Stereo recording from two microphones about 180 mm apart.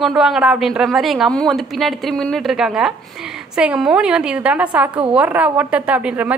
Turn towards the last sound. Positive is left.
turn(degrees=-10)  # may be behind; listen again after turning